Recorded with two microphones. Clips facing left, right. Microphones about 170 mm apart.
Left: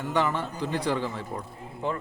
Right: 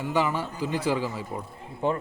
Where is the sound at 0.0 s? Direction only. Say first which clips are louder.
Right 1 dB; centre (ahead or behind).